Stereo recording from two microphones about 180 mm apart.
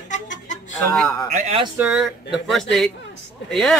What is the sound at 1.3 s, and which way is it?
Speech, 45° right (ahead or behind).